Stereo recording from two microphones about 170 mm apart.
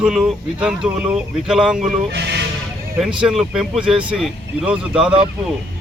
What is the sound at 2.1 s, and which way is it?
Speech, 85° right.